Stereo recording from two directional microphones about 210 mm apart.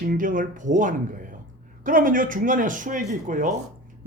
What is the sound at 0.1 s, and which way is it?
A man's voice, 40° right (ahead or behind).